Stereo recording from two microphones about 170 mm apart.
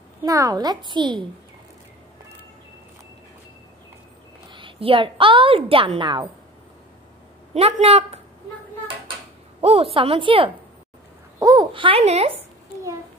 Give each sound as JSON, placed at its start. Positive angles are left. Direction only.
{"t": 0.2, "sound": "a child's voice", "side_deg": -20}
{"t": 4.5, "sound": "a woman's voice", "side_deg": -30}
{"t": 7.5, "sound": "a woman's voice", "side_deg": -40}
{"t": 9.6, "sound": "a woman's voice", "side_deg": -35}